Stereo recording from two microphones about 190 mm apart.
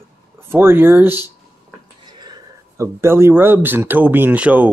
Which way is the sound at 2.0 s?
20° right (ahead or behind).